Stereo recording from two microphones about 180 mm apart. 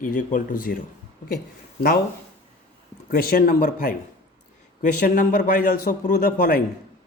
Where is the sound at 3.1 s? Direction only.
50° left (ahead or behind).